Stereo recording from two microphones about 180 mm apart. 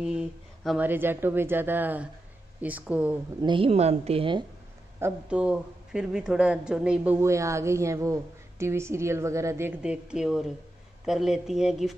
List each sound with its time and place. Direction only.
0.0 s speech: 5° right (ahead or behind)
3.3 s speech: 25° right (ahead or behind)
5.0 s speech: 5° right (ahead or behind)